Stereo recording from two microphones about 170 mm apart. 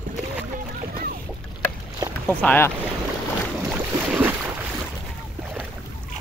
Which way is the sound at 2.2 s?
10° left (ahead or behind).